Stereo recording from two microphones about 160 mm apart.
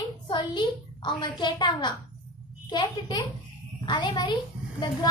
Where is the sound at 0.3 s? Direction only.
30° left (ahead or behind).